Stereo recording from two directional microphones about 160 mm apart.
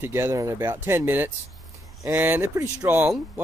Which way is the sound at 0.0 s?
15° right (ahead or behind).